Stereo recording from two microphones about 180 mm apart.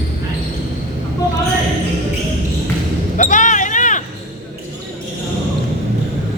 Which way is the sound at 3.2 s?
45° left (ahead or behind).